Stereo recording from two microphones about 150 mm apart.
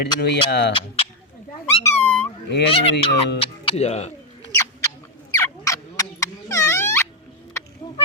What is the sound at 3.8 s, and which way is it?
Speech, 45° left (ahead or behind).